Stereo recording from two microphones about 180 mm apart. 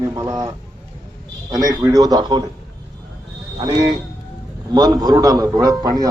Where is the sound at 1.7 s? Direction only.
20° right (ahead or behind).